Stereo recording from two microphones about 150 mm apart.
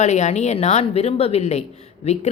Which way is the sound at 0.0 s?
50° left (ahead or behind).